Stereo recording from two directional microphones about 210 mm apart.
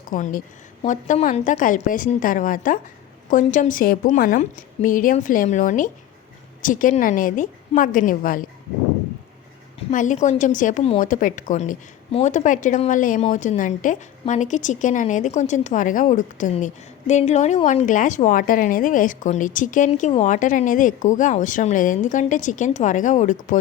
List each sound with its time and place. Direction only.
0.1 s a woman's voice: 40° left (ahead or behind)
9.9 s a woman's voice: 35° left (ahead or behind)